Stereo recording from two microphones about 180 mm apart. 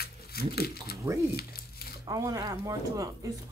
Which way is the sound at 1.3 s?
60° left (ahead or behind).